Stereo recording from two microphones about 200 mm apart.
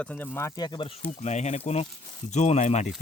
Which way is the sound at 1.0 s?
35° left (ahead or behind).